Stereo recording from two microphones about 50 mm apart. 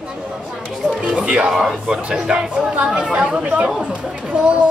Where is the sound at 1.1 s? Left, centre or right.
Right.